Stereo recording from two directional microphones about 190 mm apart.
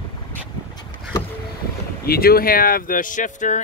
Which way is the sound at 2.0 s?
55° left (ahead or behind).